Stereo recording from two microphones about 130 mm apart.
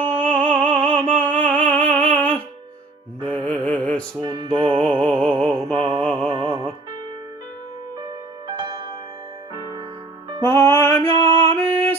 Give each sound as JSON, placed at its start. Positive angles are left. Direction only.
{"t": 0.0, "sound": "music", "side_deg": 10}
{"t": 4.2, "sound": "music", "side_deg": -35}
{"t": 5.0, "sound": "music", "side_deg": 10}
{"t": 5.8, "sound": "mantra", "side_deg": -45}
{"t": 6.0, "sound": "music", "side_deg": 10}
{"t": 6.4, "sound": "music", "side_deg": -50}
{"t": 8.5, "sound": "music", "side_deg": -35}
{"t": 10.4, "sound": "music", "side_deg": 20}